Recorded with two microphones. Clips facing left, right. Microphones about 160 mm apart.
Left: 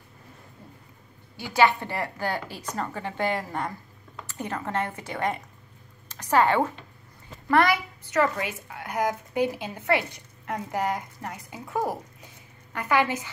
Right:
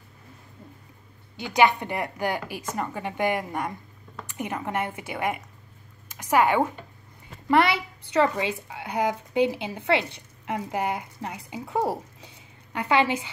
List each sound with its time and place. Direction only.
1.3 s a woman's voice: 20° right (ahead or behind)
7.4 s a woman's voice: 25° right (ahead or behind)
11.8 s a woman's voice: 30° right (ahead or behind)